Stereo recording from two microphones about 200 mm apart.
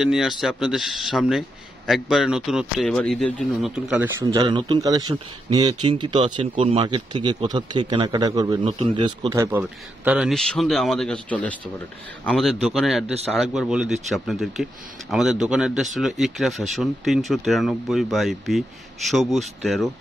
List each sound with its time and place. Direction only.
0.0 s speech: centre (ahead or behind)
4.3 s speech: 25° right (ahead or behind); by 19.9 s centre (ahead or behind)